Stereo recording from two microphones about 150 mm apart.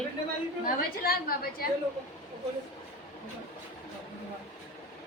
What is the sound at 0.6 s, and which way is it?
A woman's voice, 75° left (ahead or behind).